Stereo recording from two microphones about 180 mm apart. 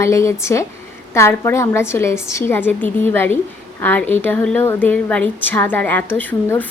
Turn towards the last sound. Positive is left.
turn(degrees=10)  # may be behind; listen again after turning